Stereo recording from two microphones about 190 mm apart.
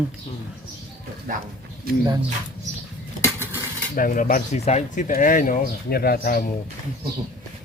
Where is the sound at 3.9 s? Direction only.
45° left (ahead or behind).